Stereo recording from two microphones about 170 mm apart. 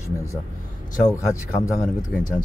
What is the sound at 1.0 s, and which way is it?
Speech, 20° left (ahead or behind).